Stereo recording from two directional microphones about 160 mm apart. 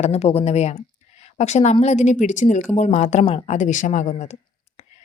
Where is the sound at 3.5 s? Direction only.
50° left (ahead or behind).